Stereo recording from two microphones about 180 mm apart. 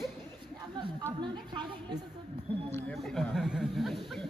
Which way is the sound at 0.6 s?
25° right (ahead or behind).